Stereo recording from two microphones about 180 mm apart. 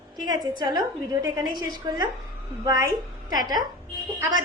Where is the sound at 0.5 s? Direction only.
20° right (ahead or behind).